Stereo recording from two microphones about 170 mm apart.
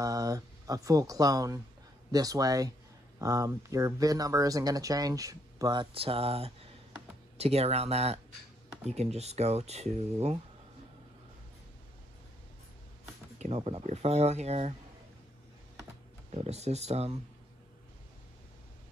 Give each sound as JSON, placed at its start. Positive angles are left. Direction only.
{"t": 0.0, "sound": "speech", "side_deg": -20}
{"t": 13.6, "sound": "speech", "side_deg": -25}
{"t": 13.8, "sound": "speech", "side_deg": -40}
{"t": 16.3, "sound": "speech", "side_deg": -40}